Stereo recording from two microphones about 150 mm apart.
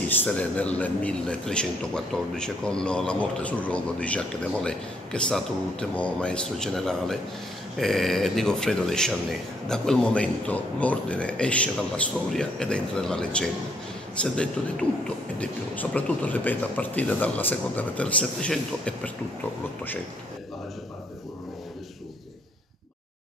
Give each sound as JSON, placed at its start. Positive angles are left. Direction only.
{"t": 0.2, "sound": "a man's voice", "side_deg": 10}